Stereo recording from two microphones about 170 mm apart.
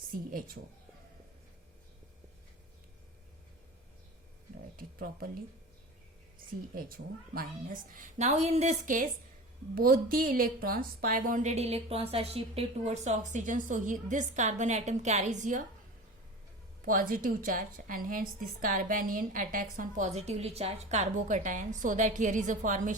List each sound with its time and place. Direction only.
0.1 s speech: 55° right (ahead or behind)
4.8 s speech: 60° right (ahead or behind)
6.7 s a woman's voice: 55° right (ahead or behind)
16.8 s a woman's voice: 55° right (ahead or behind)